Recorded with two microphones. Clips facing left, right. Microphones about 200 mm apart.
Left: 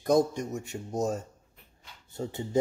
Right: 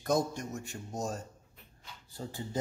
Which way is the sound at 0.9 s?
20° left (ahead or behind).